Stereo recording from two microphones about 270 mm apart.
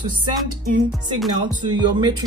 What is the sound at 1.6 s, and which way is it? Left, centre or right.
Speech, centre.